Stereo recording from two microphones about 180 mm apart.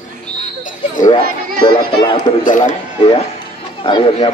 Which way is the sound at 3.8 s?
30° left (ahead or behind).